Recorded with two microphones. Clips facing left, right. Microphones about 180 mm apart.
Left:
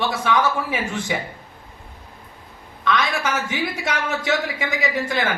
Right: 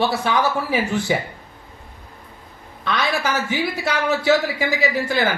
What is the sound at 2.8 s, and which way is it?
A woman's voice, 35° right (ahead or behind).